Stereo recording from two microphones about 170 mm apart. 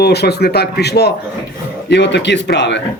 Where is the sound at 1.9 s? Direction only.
90° left.